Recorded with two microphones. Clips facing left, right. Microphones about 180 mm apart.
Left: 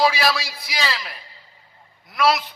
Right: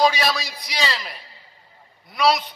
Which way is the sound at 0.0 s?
5° left (ahead or behind).